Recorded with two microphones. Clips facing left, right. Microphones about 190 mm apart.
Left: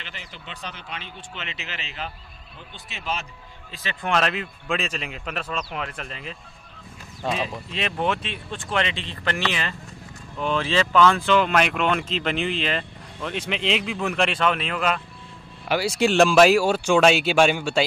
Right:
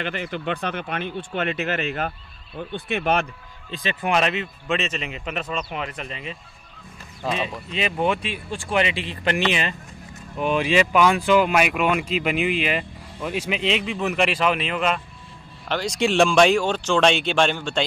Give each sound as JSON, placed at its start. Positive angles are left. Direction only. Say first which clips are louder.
{"t": 0.0, "sound": "speech", "louder": "right 14 dB", "side_deg": -55}
{"t": 3.8, "sound": "speech", "louder": "right 2 dB", "side_deg": -10}